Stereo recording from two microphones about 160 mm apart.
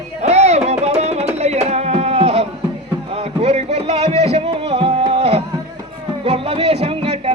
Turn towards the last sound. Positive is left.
turn(degrees=-35)  # may be behind; listen again after turning